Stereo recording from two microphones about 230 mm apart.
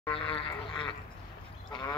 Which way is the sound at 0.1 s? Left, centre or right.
Left.